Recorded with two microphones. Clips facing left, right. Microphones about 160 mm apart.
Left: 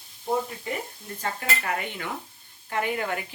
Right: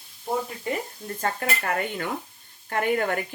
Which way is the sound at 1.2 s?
50° right (ahead or behind).